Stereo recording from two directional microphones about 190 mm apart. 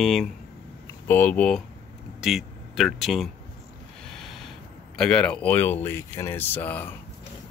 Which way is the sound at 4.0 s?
Centre (ahead or behind).